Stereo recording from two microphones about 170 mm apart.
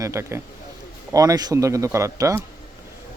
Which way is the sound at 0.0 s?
15° right (ahead or behind).